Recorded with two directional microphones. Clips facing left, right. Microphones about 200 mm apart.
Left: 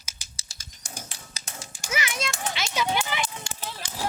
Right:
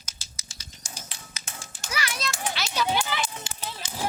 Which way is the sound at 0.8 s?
50° left (ahead or behind).